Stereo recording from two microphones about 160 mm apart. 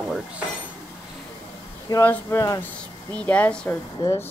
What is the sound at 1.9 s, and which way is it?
Speech, 15° left (ahead or behind).